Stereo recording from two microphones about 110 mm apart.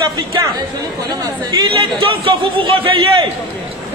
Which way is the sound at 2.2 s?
50° right (ahead or behind).